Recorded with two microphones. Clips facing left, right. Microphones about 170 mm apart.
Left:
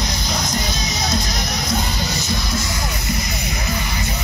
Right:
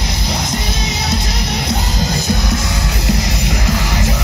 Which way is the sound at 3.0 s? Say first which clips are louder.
Right 6 dB; 85° right.